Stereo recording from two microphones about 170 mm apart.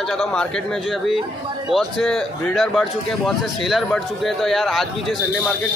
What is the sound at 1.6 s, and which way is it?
Speech, centre (ahead or behind).